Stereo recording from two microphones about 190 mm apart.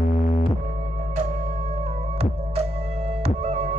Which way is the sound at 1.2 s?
35° right (ahead or behind).